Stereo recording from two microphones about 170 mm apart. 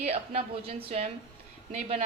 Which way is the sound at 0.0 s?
35° right (ahead or behind).